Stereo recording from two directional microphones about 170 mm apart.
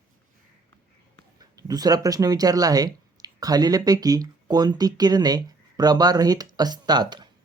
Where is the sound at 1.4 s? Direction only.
20° right (ahead or behind).